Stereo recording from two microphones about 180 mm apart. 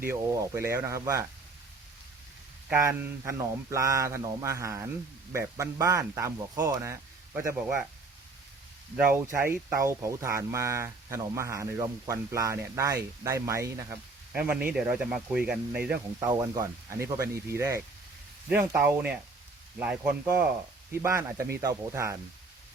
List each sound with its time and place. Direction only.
0.1 s speech: 15° right (ahead or behind)
2.6 s speech: 10° right (ahead or behind)
9.3 s speech: 15° right (ahead or behind)